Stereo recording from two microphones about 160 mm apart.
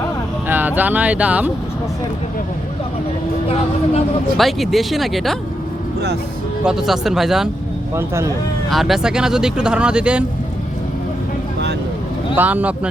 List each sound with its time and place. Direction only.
0.4 s speech: 10° right (ahead or behind)
4.4 s speech: centre (ahead or behind)
6.7 s speech: 5° right (ahead or behind)
7.9 s speech: 15° right (ahead or behind)
8.7 s speech: centre (ahead or behind)
12.4 s speech: 10° right (ahead or behind)